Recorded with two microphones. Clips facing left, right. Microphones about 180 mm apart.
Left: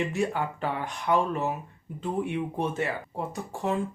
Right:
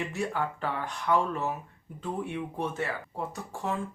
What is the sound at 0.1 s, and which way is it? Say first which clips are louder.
Speech: left 3 dB; 20° left (ahead or behind).